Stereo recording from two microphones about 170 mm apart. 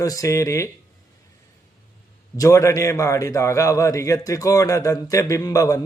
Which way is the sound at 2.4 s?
20° left (ahead or behind).